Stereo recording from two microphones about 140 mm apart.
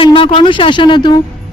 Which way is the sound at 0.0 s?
40° left (ahead or behind).